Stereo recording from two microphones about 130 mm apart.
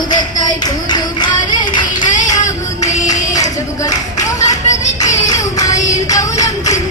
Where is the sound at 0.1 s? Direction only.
30° left (ahead or behind).